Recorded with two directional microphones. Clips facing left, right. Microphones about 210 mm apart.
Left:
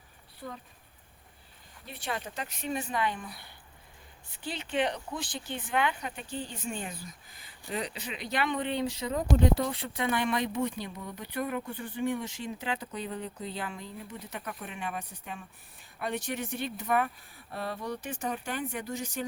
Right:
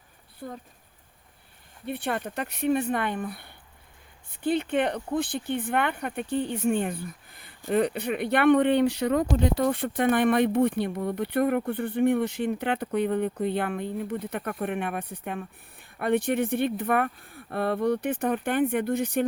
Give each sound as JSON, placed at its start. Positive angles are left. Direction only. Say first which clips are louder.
{"t": 0.4, "sound": "speech", "louder": "right 4 dB", "side_deg": -50}
{"t": 1.8, "sound": "speech", "louder": "right 7 dB", "side_deg": -60}
{"t": 9.6, "sound": "speech", "louder": "right 8 dB", "side_deg": -50}